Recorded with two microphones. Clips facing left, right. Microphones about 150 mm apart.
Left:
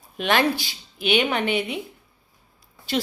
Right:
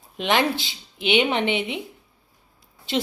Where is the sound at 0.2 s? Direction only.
20° right (ahead or behind).